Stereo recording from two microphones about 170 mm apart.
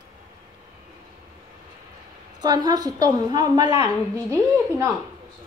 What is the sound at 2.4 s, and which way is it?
A woman's voice, 25° right (ahead or behind).